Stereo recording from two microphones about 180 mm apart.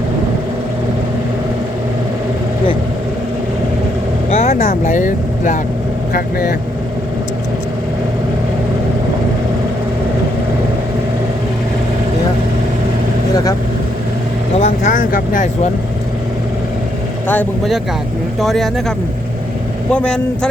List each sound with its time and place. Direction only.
4.3 s vehicle: 35° left (ahead or behind)
4.5 s speech: 50° left (ahead or behind)
6.1 s speech: 55° left (ahead or behind)
14.6 s vehicle: 50° left (ahead or behind)
17.2 s speech: 10° left (ahead or behind)
19.9 s speech: 5° left (ahead or behind)